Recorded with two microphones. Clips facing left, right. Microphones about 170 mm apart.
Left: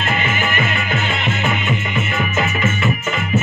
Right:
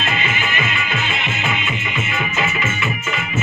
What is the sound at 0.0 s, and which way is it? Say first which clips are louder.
Music: left 3 dB; 55° left (ahead or behind).